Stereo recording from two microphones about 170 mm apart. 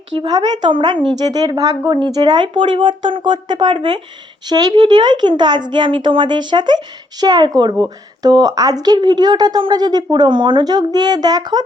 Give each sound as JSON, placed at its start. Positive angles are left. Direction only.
{"t": 0.2, "sound": "speech", "side_deg": -25}